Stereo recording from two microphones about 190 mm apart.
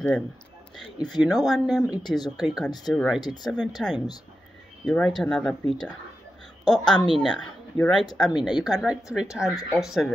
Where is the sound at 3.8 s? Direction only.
5° left (ahead or behind).